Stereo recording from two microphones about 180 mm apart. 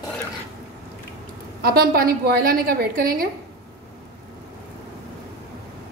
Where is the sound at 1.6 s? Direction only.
55° right (ahead or behind).